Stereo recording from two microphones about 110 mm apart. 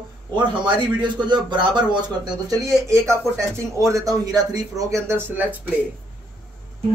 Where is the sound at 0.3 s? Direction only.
45° right (ahead or behind).